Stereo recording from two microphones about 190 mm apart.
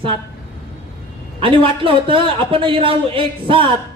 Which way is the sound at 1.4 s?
30° right (ahead or behind).